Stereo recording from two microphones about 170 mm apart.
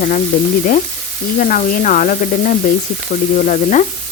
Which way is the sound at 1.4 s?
50° left (ahead or behind).